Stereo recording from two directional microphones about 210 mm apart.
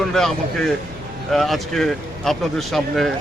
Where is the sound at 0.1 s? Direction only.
5° left (ahead or behind).